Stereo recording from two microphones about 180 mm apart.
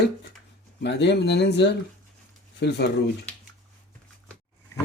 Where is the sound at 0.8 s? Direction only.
70° left (ahead or behind).